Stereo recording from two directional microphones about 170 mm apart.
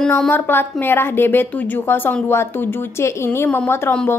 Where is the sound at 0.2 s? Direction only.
10° left (ahead or behind).